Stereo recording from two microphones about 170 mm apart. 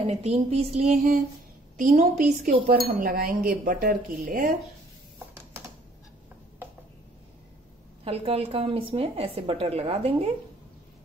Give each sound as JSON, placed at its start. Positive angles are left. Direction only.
{"t": 0.0, "sound": "a woman's voice", "side_deg": -35}
{"t": 2.9, "sound": "speech", "side_deg": -55}
{"t": 8.0, "sound": "a woman's voice", "side_deg": -35}